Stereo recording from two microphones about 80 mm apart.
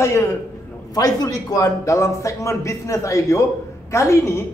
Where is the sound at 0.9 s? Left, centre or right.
Left.